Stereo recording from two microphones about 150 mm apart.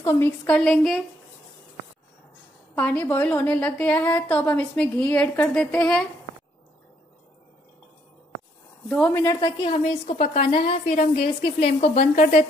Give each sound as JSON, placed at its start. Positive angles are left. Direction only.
{"t": 0.0, "sound": "a woman's voice", "side_deg": 15}
{"t": 2.7, "sound": "a woman's voice", "side_deg": 10}
{"t": 9.0, "sound": "a woman's voice", "side_deg": 20}
{"t": 10.0, "sound": "a woman's voice", "side_deg": 45}